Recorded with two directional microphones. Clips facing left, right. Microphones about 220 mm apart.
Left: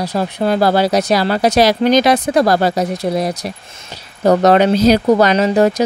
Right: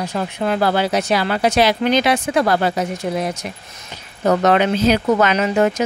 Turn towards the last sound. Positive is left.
turn(degrees=35)  # may be behind; listen again after turning